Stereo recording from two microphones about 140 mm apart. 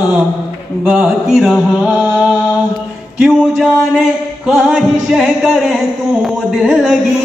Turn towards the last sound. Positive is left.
turn(degrees=-5)  # may be behind; listen again after turning